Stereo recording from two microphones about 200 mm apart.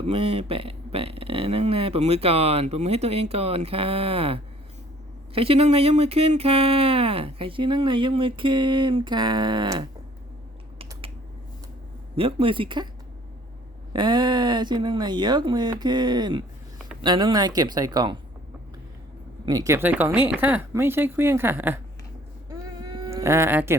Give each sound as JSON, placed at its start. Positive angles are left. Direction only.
{"t": 0.1, "sound": "speech", "side_deg": -30}
{"t": 12.1, "sound": "speech", "side_deg": -25}
{"t": 13.9, "sound": "speech", "side_deg": -25}
{"t": 19.5, "sound": "speech", "side_deg": -15}
{"t": 22.4, "sound": "a sound", "side_deg": -20}